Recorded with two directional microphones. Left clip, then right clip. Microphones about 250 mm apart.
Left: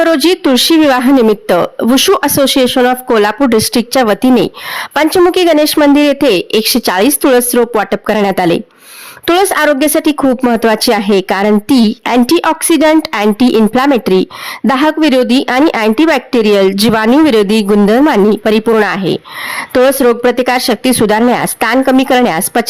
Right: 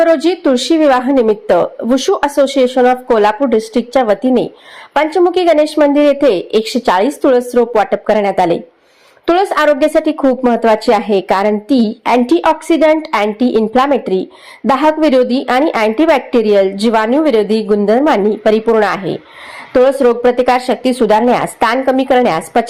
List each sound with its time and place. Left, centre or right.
0.0 s speech: left